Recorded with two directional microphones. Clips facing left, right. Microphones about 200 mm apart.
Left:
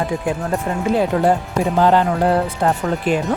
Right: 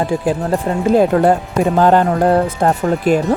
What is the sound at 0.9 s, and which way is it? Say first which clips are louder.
Speech: right 5 dB; 55° right (ahead or behind).